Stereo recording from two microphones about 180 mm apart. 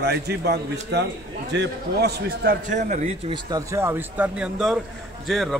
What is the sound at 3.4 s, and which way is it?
A man's voice, 15° right (ahead or behind).